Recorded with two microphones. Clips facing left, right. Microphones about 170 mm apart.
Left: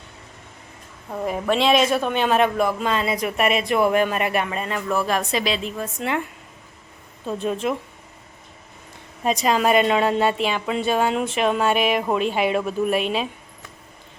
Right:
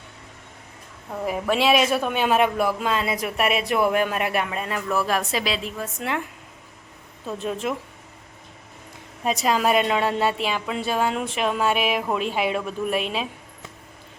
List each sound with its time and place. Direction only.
1.2 s a woman's voice: 5° right (ahead or behind)
7.3 s a woman's voice: centre (ahead or behind)
9.2 s a woman's voice: centre (ahead or behind)